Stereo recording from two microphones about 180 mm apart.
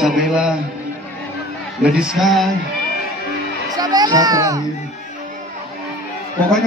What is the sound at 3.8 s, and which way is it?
Speech, 20° right (ahead or behind).